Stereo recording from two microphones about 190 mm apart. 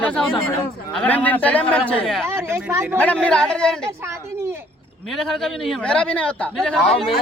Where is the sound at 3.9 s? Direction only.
15° right (ahead or behind).